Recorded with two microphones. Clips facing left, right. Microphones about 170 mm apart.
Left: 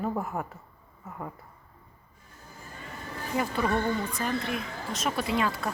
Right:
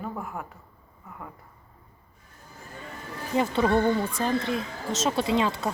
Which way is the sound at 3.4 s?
25° right (ahead or behind).